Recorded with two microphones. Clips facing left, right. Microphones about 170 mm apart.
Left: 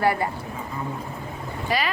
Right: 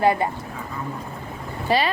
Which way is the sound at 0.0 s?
20° right (ahead or behind).